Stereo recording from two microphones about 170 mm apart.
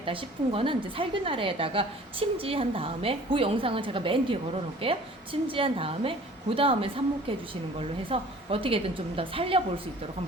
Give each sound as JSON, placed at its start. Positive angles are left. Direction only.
{"t": 0.0, "sound": "a woman's voice", "side_deg": -30}